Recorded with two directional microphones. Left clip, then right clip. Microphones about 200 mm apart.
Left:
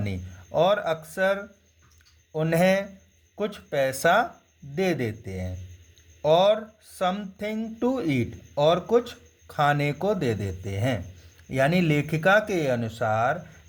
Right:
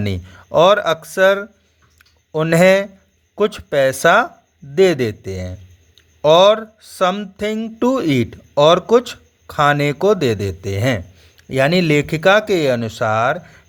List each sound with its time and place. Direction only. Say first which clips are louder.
0.0 s speech: right 10 dB; 30° right (ahead or behind)